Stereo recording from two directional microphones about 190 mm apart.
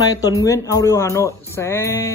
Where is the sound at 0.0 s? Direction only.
20° left (ahead or behind).